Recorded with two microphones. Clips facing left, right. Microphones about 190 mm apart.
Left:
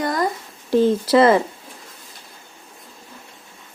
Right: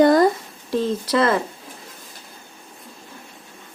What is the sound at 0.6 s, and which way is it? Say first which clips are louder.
Speech: left 6 dB; 30° left (ahead or behind).